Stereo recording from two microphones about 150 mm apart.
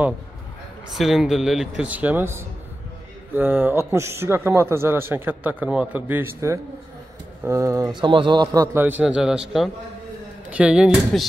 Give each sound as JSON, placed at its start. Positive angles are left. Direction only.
{"t": 0.9, "sound": "a man's voice", "side_deg": 0}
{"t": 8.7, "sound": "a man's voice", "side_deg": -10}